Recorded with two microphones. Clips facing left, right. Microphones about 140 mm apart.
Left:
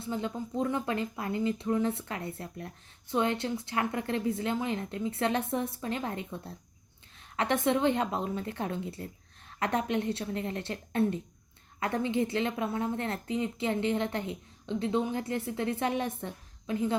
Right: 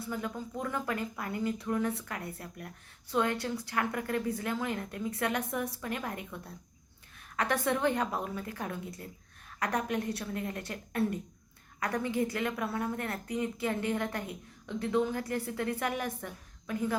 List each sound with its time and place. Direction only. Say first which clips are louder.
0.0 s speech: left 3 dB; 25° left (ahead or behind)